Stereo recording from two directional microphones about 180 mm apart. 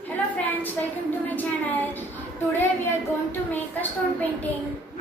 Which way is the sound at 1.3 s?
10° left (ahead or behind).